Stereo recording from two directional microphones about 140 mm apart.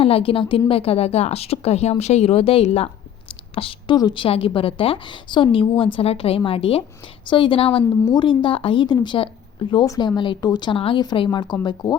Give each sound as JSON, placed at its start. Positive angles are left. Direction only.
{"t": 0.0, "sound": "a woman's voice", "side_deg": 40}
{"t": 9.8, "sound": "a woman's voice", "side_deg": 25}